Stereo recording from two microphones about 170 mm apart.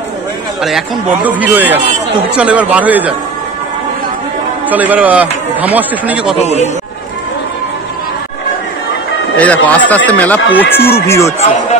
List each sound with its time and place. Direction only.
0.6 s a man's voice: centre (ahead or behind)
4.6 s a man's voice: 10° right (ahead or behind)
6.4 s a man's voice: 40° left (ahead or behind)
9.4 s speech: 10° left (ahead or behind)